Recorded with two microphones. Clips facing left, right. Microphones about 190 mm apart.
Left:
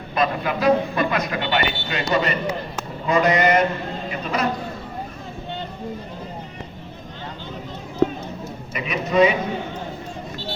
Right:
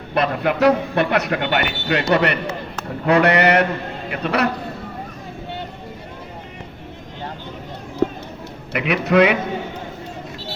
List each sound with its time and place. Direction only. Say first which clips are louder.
0.1 s a man's voice: right 3 dB; 70° right (ahead or behind)
8.7 s a man's voice: right 5 dB; 75° right (ahead or behind)